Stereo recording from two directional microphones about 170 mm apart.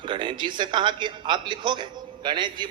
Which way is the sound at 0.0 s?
30° right (ahead or behind).